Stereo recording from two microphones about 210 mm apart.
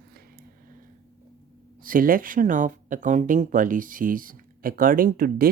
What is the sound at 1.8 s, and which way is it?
Speech, 40° right (ahead or behind).